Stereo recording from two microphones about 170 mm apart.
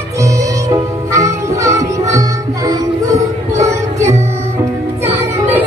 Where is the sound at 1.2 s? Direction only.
20° right (ahead or behind).